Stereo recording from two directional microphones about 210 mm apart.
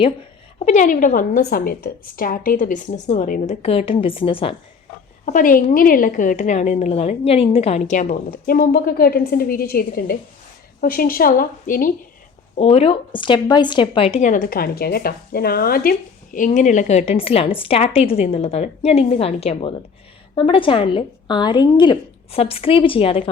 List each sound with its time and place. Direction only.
0.6 s a woman's voice: 35° left (ahead or behind)
5.2 s a woman's voice: 40° left (ahead or behind)
12.5 s a woman's voice: 30° left (ahead or behind)